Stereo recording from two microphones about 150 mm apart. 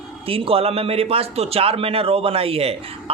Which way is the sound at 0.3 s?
40° right (ahead or behind).